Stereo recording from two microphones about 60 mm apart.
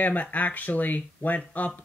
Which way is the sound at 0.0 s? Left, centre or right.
Left.